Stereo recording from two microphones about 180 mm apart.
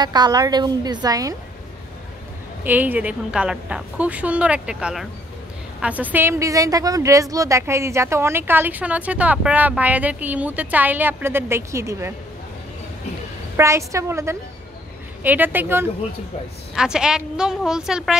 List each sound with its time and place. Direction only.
0.0 s a woman's voice: 25° right (ahead or behind)
2.6 s a woman's voice: 10° right (ahead or behind)
13.6 s a woman's voice: 15° right (ahead or behind)